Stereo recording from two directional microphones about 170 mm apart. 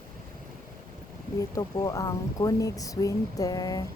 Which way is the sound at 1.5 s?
20° left (ahead or behind).